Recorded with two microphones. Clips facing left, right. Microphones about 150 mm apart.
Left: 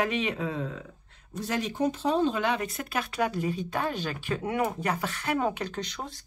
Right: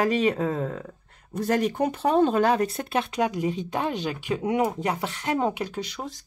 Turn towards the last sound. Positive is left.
turn(degrees=-5)  # may be behind; listen again after turning